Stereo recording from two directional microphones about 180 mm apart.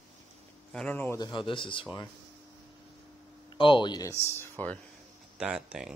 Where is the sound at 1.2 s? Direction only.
25° left (ahead or behind).